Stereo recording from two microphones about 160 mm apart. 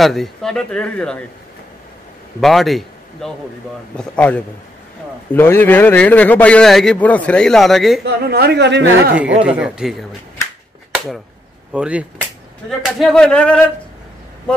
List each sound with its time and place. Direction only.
0.0 s a man's voice: centre (ahead or behind)
2.4 s a man's voice: centre (ahead or behind)
8.0 s a woman's voice: 80° right
9.4 s a man's voice: 5° right (ahead or behind)
11.7 s a man's voice: 5° right (ahead or behind)